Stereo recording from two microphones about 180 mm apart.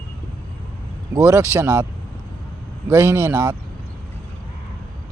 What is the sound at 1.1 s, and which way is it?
Speech, 15° right (ahead or behind).